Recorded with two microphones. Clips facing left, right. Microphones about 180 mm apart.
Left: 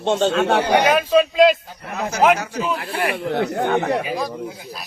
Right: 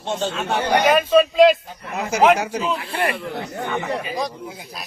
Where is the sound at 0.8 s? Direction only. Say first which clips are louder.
Right 1 dB; centre (ahead or behind).